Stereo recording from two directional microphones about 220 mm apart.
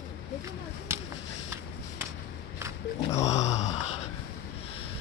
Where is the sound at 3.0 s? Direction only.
30° left (ahead or behind).